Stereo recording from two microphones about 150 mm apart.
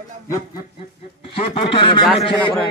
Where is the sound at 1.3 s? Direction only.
35° left (ahead or behind).